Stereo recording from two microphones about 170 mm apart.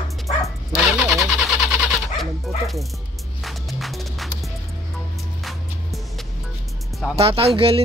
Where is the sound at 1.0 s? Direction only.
5° right (ahead or behind).